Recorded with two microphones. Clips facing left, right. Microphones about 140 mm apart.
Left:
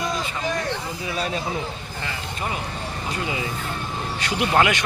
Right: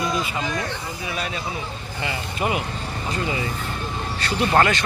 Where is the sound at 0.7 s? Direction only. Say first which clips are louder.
Left 2 dB; 35° left (ahead or behind).